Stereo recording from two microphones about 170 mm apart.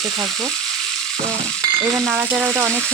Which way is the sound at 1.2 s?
20° right (ahead or behind).